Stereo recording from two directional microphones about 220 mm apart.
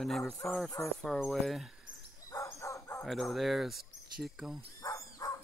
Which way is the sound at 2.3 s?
15° left (ahead or behind).